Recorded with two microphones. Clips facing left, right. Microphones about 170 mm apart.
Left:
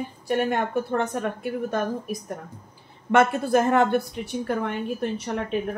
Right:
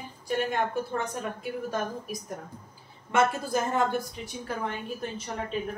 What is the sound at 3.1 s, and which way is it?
A woman's voice, 65° left (ahead or behind).